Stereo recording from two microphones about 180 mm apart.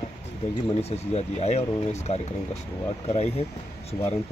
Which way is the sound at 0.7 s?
35° left (ahead or behind).